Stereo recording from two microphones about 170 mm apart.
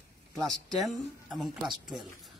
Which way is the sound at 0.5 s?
Centre (ahead or behind).